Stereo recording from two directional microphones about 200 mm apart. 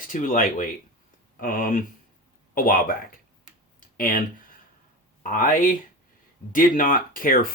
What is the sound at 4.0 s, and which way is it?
Speech, 45° left (ahead or behind).